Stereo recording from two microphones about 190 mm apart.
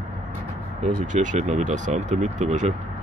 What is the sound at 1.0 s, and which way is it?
Speech, 40° right (ahead or behind).